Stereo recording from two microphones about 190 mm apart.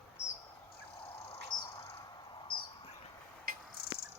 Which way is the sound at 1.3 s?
25° left (ahead or behind).